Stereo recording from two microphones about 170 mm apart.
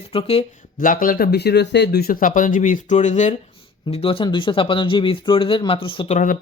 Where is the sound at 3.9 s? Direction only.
35° left (ahead or behind).